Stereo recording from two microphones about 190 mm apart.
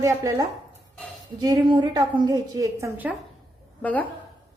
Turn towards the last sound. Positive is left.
turn(degrees=10)  # may be behind; listen again after turning